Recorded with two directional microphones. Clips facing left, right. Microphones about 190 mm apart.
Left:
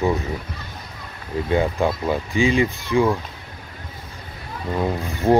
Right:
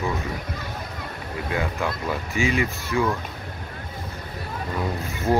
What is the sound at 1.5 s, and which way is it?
Speech, 30° left (ahead or behind).